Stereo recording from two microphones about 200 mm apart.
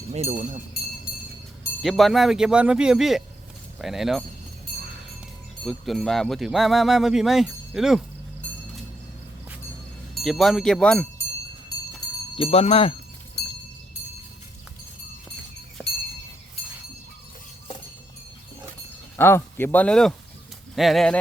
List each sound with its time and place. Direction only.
0.1 s speech: 35° right (ahead or behind)
1.8 s speech: centre (ahead or behind)
5.6 s speech: centre (ahead or behind)
10.2 s speech: centre (ahead or behind)
12.4 s speech: 30° left (ahead or behind)
15.8 s a sound: 5° right (ahead or behind)
19.1 s speech: 10° left (ahead or behind)